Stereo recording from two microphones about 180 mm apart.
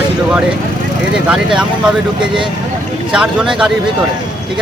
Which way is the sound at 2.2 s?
25° right (ahead or behind).